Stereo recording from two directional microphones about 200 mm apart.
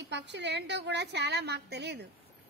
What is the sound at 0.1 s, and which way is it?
A woman's voice, 60° right (ahead or behind).